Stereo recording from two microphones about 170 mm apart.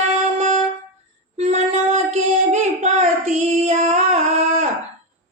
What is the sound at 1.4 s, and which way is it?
Child singing, 40° right (ahead or behind).